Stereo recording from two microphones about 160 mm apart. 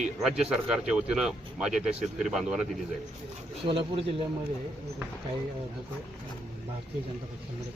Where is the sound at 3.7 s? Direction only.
35° right (ahead or behind).